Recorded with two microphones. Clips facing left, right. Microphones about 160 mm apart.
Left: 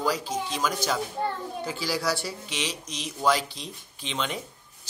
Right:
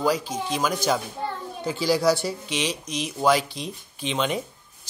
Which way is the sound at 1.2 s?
50° left (ahead or behind).